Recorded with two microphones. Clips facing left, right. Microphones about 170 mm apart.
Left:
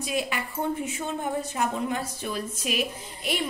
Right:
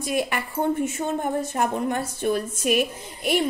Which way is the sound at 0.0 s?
55° right (ahead or behind).